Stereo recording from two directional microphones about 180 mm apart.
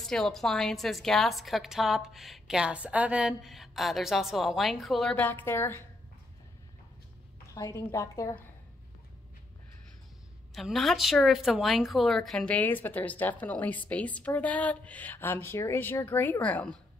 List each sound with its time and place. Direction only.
0.0 s a woman's voice: centre (ahead or behind)
7.5 s speech: 15° left (ahead or behind)
10.5 s speech: centre (ahead or behind)